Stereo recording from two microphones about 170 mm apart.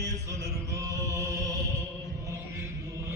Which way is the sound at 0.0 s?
15° right (ahead or behind).